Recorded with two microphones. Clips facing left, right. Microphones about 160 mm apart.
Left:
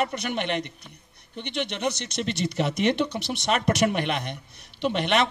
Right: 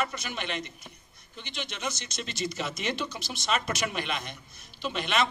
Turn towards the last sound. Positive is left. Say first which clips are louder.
# left 5 dB
turn(degrees=65)  # may be behind; listen again after turning